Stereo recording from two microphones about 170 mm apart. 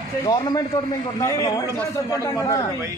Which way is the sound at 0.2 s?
25° left (ahead or behind).